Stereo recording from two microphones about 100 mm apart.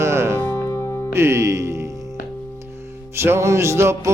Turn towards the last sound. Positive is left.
turn(degrees=-25)  # may be behind; listen again after turning